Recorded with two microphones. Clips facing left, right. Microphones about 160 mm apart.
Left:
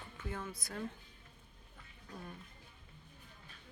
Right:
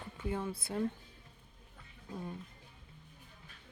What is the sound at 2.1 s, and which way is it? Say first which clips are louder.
Speech: right 6 dB; 20° right (ahead or behind).